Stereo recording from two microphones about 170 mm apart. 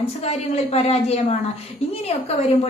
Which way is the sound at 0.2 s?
40° left (ahead or behind).